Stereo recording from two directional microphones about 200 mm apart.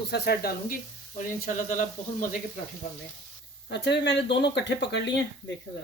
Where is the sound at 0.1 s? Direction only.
50° left (ahead or behind).